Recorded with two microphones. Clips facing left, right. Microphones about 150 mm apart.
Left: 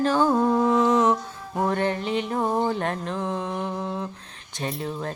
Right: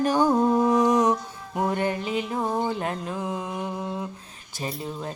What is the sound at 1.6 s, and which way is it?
Mantra, 10° right (ahead or behind).